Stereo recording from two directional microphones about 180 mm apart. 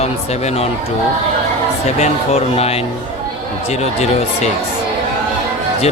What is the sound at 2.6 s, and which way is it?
Speech, 35° left (ahead or behind).